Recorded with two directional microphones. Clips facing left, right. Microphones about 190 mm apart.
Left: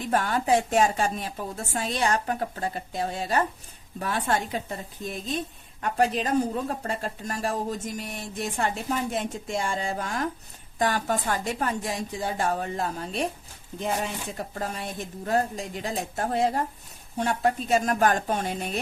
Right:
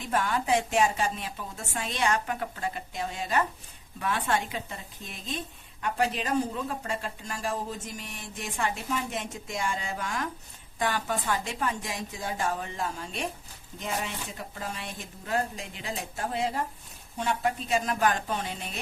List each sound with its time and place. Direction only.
0.1 s speech: 40° left (ahead or behind)